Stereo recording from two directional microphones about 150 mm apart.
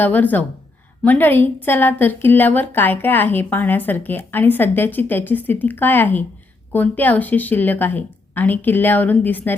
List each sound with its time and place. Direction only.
0.0 s a woman's voice: 10° left (ahead or behind)